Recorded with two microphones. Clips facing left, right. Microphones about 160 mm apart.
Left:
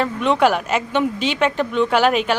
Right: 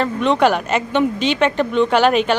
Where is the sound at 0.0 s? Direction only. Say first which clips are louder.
Right 1 dB; 5° left (ahead or behind).